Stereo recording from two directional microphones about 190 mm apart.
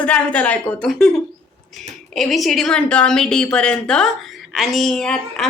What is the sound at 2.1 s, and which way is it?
A woman's voice, centre (ahead or behind).